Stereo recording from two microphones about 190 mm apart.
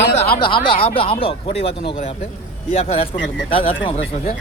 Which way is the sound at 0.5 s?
30° left (ahead or behind).